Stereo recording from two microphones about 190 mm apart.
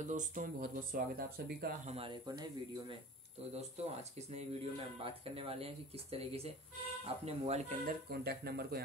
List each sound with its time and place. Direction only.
0.0 s speech: 40° right (ahead or behind)
1.9 s speech: 30° right (ahead or behind)
3.5 s speech: 35° right (ahead or behind)
8.1 s speech: 55° right (ahead or behind)